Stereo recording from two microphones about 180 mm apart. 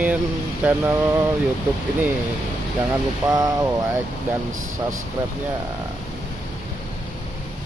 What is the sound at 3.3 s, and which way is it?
Mantra, 20° right (ahead or behind).